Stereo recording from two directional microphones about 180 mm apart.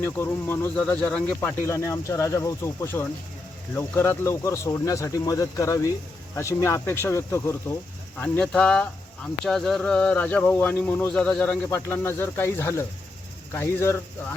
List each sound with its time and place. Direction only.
0.0 s speech: 10° left (ahead or behind)